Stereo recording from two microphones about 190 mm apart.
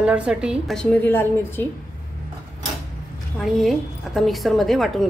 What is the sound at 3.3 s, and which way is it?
A woman's voice, centre (ahead or behind).